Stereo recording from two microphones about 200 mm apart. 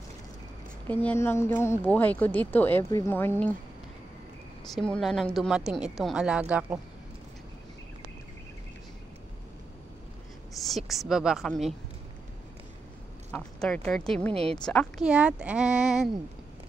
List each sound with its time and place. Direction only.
1.0 s speech: 10° left (ahead or behind)
4.7 s a woman's voice: 5° left (ahead or behind)
10.5 s a woman's voice: centre (ahead or behind)
13.3 s a woman's voice: 5° left (ahead or behind)
14.3 s a woman's voice: 30° right (ahead or behind)
14.6 s a woman's voice: 5° left (ahead or behind)